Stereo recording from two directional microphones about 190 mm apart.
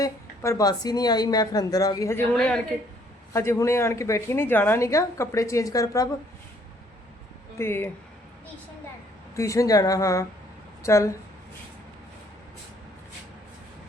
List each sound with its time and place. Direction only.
0.0 s speech: 20° left (ahead or behind)
3.3 s a woman's voice: 15° left (ahead or behind)
7.6 s a woman's voice: 10° left (ahead or behind)
9.3 s a woman's voice: 15° left (ahead or behind)